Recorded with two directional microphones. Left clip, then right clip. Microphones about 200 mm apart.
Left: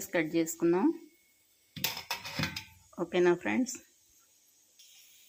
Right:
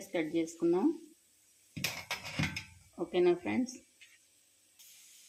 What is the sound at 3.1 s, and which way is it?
Speech, 10° left (ahead or behind).